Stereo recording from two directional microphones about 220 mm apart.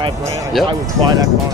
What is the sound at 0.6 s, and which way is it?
Speech, 20° right (ahead or behind).